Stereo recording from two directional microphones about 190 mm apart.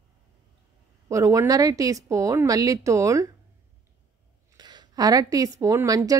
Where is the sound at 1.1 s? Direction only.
15° right (ahead or behind).